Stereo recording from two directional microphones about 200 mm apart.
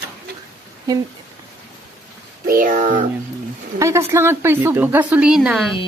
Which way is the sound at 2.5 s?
45° right (ahead or behind).